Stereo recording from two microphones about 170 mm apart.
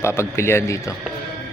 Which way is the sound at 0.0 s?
15° left (ahead or behind).